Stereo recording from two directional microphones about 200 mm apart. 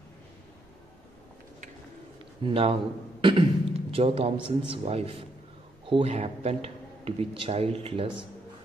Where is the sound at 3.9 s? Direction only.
30° right (ahead or behind).